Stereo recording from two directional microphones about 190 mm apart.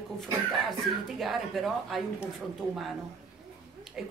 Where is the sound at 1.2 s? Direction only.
Centre (ahead or behind).